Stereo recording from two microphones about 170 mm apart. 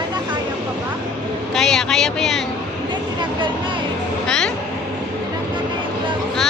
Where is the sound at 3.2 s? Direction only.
30° right (ahead or behind).